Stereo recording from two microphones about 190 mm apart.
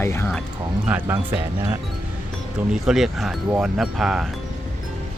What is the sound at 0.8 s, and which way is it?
Speech, 10° right (ahead or behind).